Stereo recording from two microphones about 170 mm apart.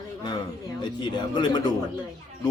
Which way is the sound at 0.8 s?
25° left (ahead or behind).